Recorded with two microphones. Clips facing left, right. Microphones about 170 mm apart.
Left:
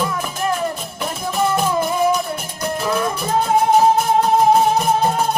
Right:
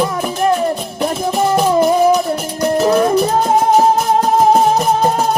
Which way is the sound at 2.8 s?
40° right (ahead or behind).